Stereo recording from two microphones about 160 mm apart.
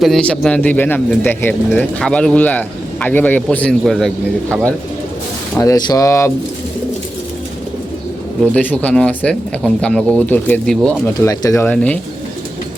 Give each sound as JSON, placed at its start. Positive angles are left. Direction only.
{"t": 0.0, "sound": "speech", "side_deg": 5}
{"t": 5.5, "sound": "speech", "side_deg": 20}
{"t": 8.5, "sound": "speech", "side_deg": 10}
{"t": 11.2, "sound": "speech", "side_deg": 20}
{"t": 11.7, "sound": "speech", "side_deg": 10}